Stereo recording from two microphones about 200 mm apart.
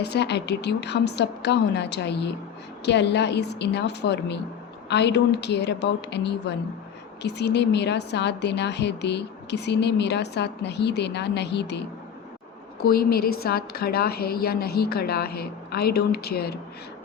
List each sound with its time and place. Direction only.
0.0 s a woman's voice: 55° left (ahead or behind)
12.8 s a woman's voice: 50° left (ahead or behind)